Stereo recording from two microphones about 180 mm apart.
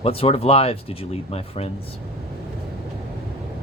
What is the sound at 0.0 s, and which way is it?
Speech, 30° left (ahead or behind).